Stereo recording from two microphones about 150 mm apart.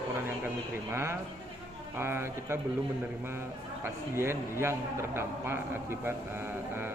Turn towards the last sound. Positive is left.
turn(degrees=-15)  # may be behind; listen again after turning